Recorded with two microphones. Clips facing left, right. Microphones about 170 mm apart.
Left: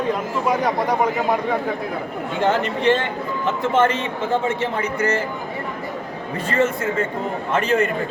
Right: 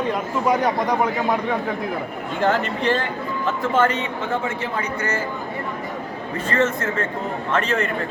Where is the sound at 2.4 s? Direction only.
20° left (ahead or behind).